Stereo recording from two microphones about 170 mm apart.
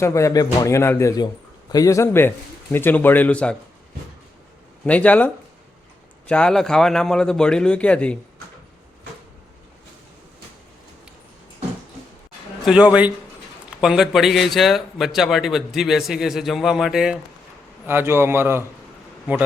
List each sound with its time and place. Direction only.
0.0 s speech: 20° left (ahead or behind)
4.9 s a man's voice: 10° left (ahead or behind)
12.6 s a man's voice: 5° right (ahead or behind)
17.8 s a man's voice: 15° right (ahead or behind)